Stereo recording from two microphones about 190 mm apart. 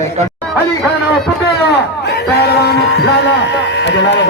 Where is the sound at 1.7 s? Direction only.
60° left (ahead or behind).